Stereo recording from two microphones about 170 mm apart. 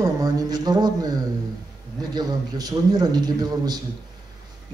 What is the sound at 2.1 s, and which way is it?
Speech, 20° right (ahead or behind).